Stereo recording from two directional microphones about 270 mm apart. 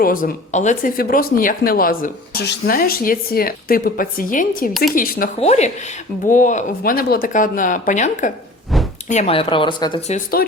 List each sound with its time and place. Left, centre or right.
0.0 s speech: left
8.7 s a sound: centre
9.0 s speech: left
10.4 s speech: left